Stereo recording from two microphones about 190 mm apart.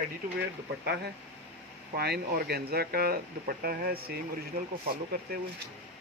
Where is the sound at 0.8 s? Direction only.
60° right (ahead or behind).